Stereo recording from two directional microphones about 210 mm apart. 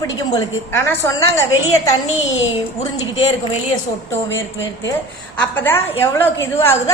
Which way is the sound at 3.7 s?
15° left (ahead or behind).